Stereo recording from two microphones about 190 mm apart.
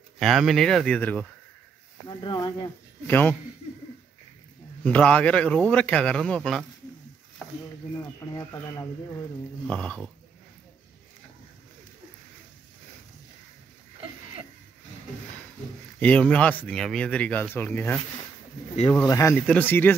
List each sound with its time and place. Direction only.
0.2 s speech: centre (ahead or behind)
2.0 s speech: 25° left (ahead or behind)
3.1 s speech: 10° left (ahead or behind)
4.8 s speech: 5° left (ahead or behind)
7.9 s speech: 15° left (ahead or behind)
9.7 s speech: 5° left (ahead or behind)
16.0 s speech: 5° left (ahead or behind)
19.0 s speech: 15° left (ahead or behind)